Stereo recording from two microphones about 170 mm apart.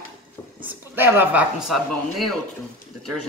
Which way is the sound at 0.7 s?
10° right (ahead or behind).